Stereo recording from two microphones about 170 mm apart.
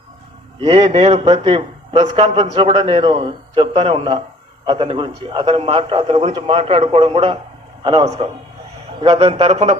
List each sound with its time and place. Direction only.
0.6 s a man's voice: 35° right (ahead or behind)